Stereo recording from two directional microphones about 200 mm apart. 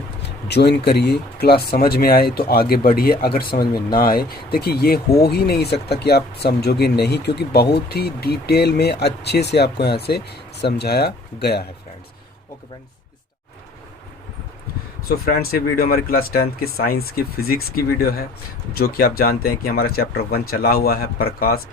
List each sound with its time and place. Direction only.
0.4 s speech: 55° left (ahead or behind)
15.0 s speech: 50° left (ahead or behind)